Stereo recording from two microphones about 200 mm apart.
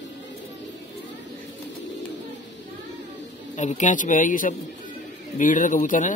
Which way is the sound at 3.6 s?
35° left (ahead or behind).